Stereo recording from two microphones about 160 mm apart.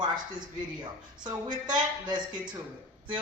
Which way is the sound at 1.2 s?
25° right (ahead or behind).